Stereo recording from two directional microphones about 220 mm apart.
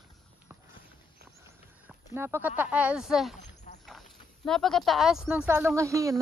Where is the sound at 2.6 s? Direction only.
5° right (ahead or behind).